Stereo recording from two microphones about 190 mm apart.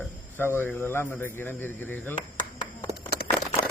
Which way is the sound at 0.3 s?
10° left (ahead or behind).